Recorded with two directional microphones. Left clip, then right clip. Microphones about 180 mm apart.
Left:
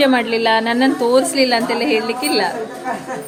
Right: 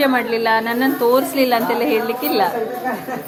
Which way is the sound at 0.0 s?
20° left (ahead or behind).